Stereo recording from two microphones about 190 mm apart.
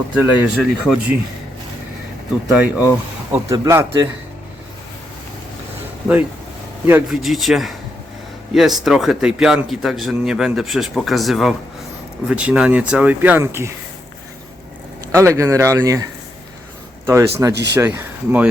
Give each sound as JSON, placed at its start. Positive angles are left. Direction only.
{"t": 0.1, "sound": "speech", "side_deg": -5}
{"t": 2.5, "sound": "speech", "side_deg": -10}
{"t": 6.8, "sound": "speech", "side_deg": -5}
{"t": 15.1, "sound": "speech", "side_deg": -15}
{"t": 17.1, "sound": "speech", "side_deg": -15}
{"t": 17.5, "sound": "speech", "side_deg": -65}
{"t": 17.7, "sound": "speech", "side_deg": -10}